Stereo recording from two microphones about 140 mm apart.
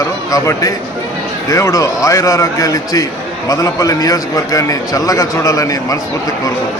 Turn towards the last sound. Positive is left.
turn(degrees=25)  # may be behind; listen again after turning